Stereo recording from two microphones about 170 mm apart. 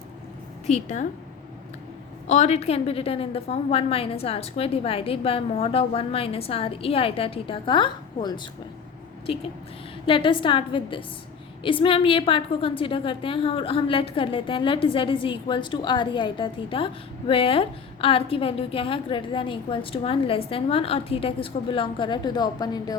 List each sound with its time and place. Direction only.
0.7 s a woman's voice: 45° left (ahead or behind)
2.2 s a woman's voice: 45° left (ahead or behind); by 23.0 s 20° left (ahead or behind)